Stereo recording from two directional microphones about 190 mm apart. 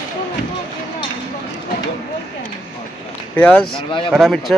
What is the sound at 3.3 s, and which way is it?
Speech, 5° left (ahead or behind).